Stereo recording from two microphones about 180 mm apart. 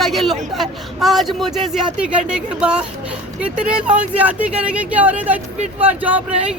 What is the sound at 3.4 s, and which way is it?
Speech, 5° right (ahead or behind).